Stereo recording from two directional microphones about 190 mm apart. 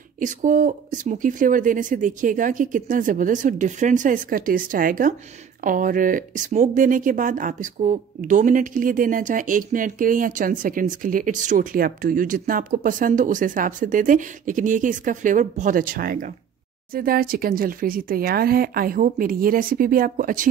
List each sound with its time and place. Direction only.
0.2 s speech: 40° right (ahead or behind)